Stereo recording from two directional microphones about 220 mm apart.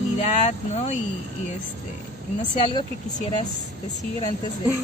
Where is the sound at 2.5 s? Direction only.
25° left (ahead or behind).